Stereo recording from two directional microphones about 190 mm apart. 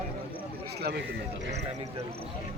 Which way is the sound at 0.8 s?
60° right (ahead or behind).